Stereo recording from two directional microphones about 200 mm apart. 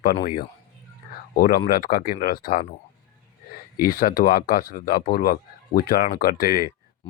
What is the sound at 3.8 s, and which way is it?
Speech, 45° left (ahead or behind).